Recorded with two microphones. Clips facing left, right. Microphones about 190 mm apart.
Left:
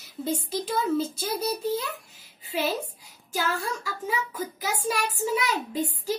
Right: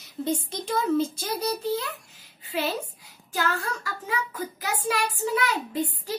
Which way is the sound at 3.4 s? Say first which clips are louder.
Right 1 dB; 10° left (ahead or behind).